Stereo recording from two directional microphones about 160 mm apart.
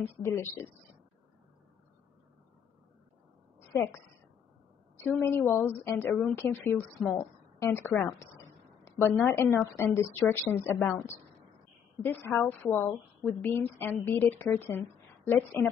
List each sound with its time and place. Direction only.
0.2 s a woman's voice: 15° left (ahead or behind)
3.7 s a woman's voice: 15° left (ahead or behind)